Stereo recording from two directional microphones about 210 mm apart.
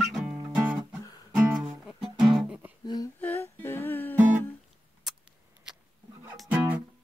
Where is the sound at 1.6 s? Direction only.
Centre (ahead or behind).